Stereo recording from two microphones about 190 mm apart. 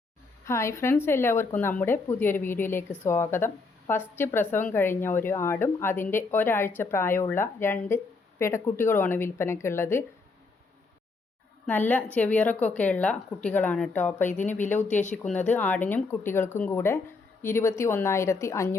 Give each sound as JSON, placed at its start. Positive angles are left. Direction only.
{"t": 0.4, "sound": "speech", "side_deg": 15}
{"t": 11.6, "sound": "a woman's voice", "side_deg": 10}
{"t": 14.6, "sound": "speech", "side_deg": 40}
{"t": 15.3, "sound": "speech", "side_deg": 10}